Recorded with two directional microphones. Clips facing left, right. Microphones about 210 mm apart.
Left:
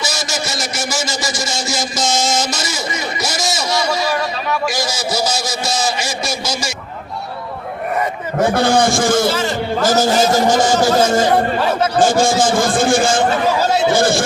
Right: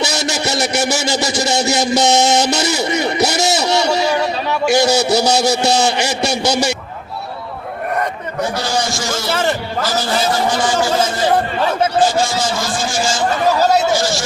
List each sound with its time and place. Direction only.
0.0 s a sound: 65° right (ahead or behind)
8.4 s a man's voice: 55° left (ahead or behind)
9.3 s a man's voice: 60° right (ahead or behind)
9.8 s a man's voice: 45° left (ahead or behind)